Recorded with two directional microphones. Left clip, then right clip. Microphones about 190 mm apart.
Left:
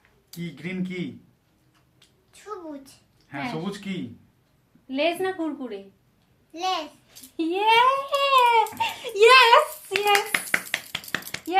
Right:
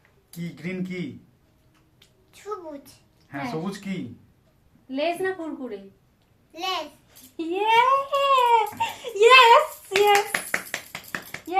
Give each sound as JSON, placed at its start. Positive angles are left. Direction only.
{"t": 0.3, "sound": "speech", "side_deg": 0}
{"t": 3.2, "sound": "speech", "side_deg": 0}
{"t": 4.9, "sound": "a child's voice", "side_deg": 45}
{"t": 6.5, "sound": "a child's voice", "side_deg": -5}
{"t": 7.3, "sound": "a child's voice", "side_deg": 50}
{"t": 10.7, "sound": "a sound", "side_deg": 50}